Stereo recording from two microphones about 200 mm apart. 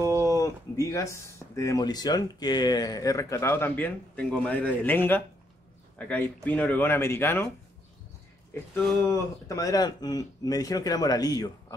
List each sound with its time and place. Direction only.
0.0 s a sound: 15° right (ahead or behind)
0.3 s speech: 15° left (ahead or behind)
8.7 s speech: 10° left (ahead or behind)